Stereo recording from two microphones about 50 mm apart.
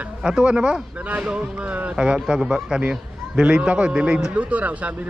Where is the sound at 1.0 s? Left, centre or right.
Right.